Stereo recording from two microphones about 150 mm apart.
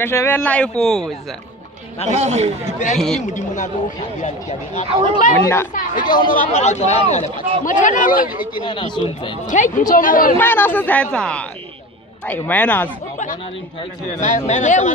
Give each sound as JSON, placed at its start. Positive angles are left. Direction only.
{"t": 0.0, "sound": "speech", "side_deg": 15}
{"t": 2.0, "sound": "a man's voice", "side_deg": -50}
{"t": 2.6, "sound": "a woman's voice", "side_deg": 50}
{"t": 5.4, "sound": "speech", "side_deg": 20}
{"t": 6.0, "sound": "speech", "side_deg": 30}
{"t": 6.5, "sound": "speech", "side_deg": 50}
{"t": 8.5, "sound": "speech", "side_deg": 30}
{"t": 9.5, "sound": "a woman's voice", "side_deg": 55}
{"t": 10.3, "sound": "speech", "side_deg": 15}
{"t": 14.1, "sound": "a woman's voice", "side_deg": 55}